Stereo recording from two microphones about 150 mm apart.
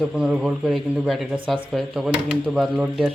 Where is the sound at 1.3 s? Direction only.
35° right (ahead or behind).